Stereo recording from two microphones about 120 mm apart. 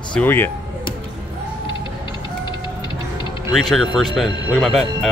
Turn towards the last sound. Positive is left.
turn(degrees=0)  # may be behind; listen again after turning